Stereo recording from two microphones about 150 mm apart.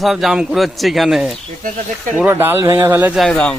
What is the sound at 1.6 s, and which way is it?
Speech, 60° right (ahead or behind).